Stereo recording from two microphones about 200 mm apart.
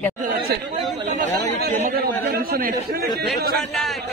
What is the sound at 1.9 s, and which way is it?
A man's voice, 50° right (ahead or behind).